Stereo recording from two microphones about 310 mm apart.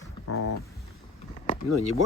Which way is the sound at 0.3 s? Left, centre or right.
Left.